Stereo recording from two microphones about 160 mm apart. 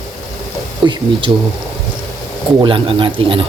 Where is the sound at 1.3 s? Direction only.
20° right (ahead or behind).